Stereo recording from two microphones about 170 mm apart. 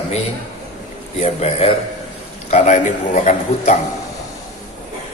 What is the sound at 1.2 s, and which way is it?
A man's voice, 40° left (ahead or behind).